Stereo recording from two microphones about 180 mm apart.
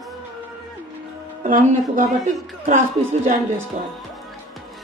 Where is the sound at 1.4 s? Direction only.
45° right (ahead or behind).